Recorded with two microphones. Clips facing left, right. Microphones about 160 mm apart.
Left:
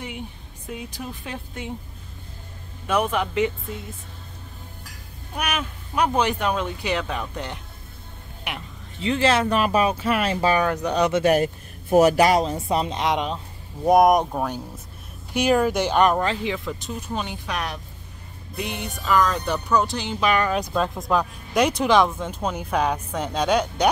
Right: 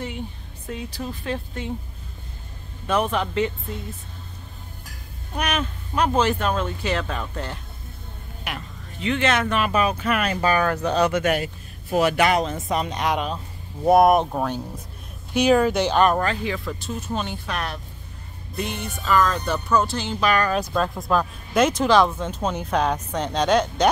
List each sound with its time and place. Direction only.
0.7 s speech: 15° left (ahead or behind)
2.9 s speech: 10° left (ahead or behind)
5.3 s speech: 10° left (ahead or behind)
8.9 s speech: 30° left (ahead or behind)
11.2 s speech: 45° left (ahead or behind); by 23.9 s 10° left (ahead or behind)